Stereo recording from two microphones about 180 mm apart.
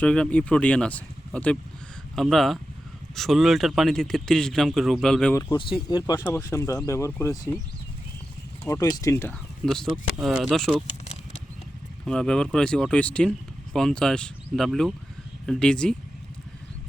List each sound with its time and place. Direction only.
0.0 s speech: 5° left (ahead or behind)
5.3 s speech: 20° left (ahead or behind)
8.7 s speech: 20° left (ahead or behind)
10.2 s speech: centre (ahead or behind)
12.0 s speech: 5° left (ahead or behind)